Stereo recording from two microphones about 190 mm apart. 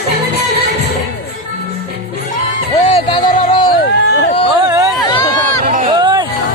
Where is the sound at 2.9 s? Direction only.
30° left (ahead or behind).